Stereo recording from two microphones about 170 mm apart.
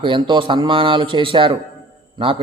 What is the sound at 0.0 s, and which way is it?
A man's voice, 30° right (ahead or behind).